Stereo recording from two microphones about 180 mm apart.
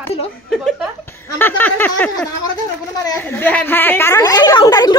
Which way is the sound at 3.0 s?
15° left (ahead or behind).